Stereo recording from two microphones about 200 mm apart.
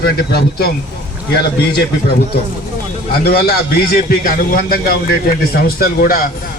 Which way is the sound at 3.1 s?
50° left (ahead or behind).